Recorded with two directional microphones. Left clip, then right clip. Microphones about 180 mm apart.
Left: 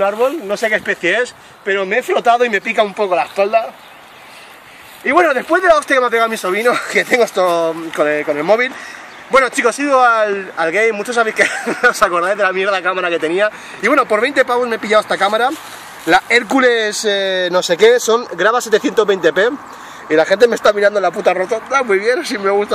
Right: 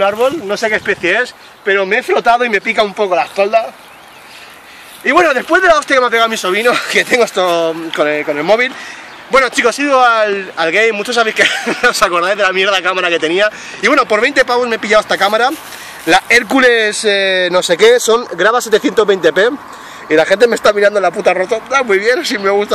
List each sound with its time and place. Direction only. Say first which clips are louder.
0.0 s speech: right 2 dB; centre (ahead or behind)
0.5 s speech: right 2 dB; 25° left (ahead or behind)
3.0 s speech: right 2 dB; centre (ahead or behind)
5.0 s speech: right 2 dB; 5° right (ahead or behind)
16.1 s speech: right 2 dB; 10° right (ahead or behind)